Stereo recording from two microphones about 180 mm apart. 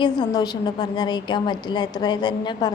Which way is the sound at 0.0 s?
25° left (ahead or behind).